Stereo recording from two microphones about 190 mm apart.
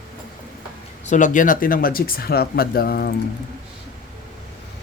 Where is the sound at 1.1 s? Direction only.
40° left (ahead or behind).